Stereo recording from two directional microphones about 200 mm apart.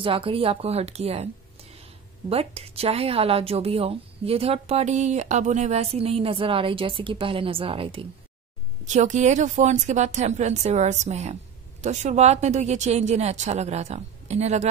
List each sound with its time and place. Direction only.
0.0 s a woman's voice: 25° right (ahead or behind)